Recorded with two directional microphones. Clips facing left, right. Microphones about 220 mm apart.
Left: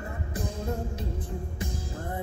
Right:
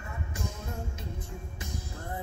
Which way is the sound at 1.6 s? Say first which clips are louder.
Left 5 dB; 30° left (ahead or behind).